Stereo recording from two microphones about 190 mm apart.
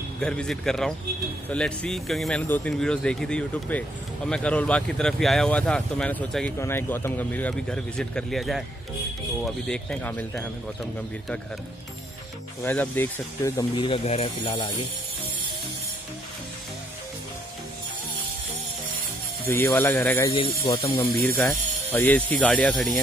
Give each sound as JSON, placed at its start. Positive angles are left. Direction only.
{"t": 0.2, "sound": "speech", "side_deg": 5}
{"t": 12.6, "sound": "speech", "side_deg": 10}
{"t": 13.7, "sound": "speech", "side_deg": 30}
{"t": 19.4, "sound": "speech", "side_deg": 10}
{"t": 20.3, "sound": "speech", "side_deg": 25}
{"t": 21.9, "sound": "speech", "side_deg": 10}